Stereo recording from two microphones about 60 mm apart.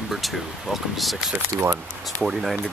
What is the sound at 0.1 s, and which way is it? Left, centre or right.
Speech, centre.